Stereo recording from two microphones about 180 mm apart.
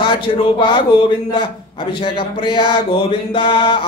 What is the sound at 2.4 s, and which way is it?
Speech, 25° left (ahead or behind).